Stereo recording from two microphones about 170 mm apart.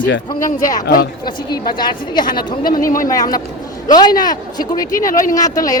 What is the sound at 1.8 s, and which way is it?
Speech, 25° left (ahead or behind).